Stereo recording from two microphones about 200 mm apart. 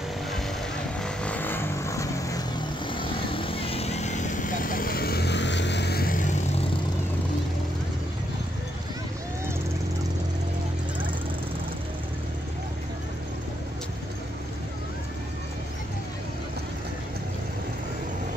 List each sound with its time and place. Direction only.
1.0 s music: 5° left (ahead or behind)
2.9 s vehicle: 25° left (ahead or behind); by 6.2 s 50° left (ahead or behind)